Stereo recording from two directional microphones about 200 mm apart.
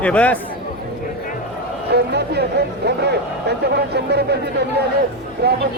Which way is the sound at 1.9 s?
55° right (ahead or behind).